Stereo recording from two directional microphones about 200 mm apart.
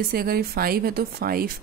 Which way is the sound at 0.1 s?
50° right (ahead or behind).